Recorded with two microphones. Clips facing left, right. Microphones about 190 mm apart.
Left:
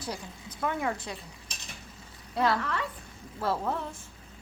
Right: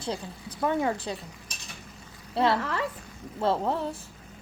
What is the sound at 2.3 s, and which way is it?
A woman's voice, 30° right (ahead or behind).